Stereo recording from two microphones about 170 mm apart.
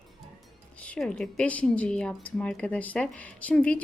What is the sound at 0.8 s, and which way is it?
A woman's voice, 5° left (ahead or behind).